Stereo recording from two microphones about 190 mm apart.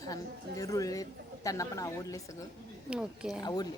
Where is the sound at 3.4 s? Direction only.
20° left (ahead or behind).